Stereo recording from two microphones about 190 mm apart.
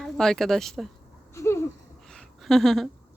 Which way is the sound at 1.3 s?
15° left (ahead or behind).